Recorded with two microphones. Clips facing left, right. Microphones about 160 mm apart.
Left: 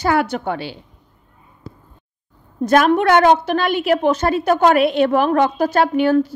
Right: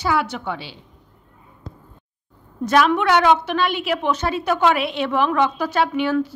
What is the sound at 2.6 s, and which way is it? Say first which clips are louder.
A woman's voice: left 3 dB; 50° left (ahead or behind).